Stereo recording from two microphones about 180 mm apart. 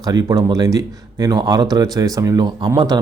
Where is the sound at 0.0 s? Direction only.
20° right (ahead or behind).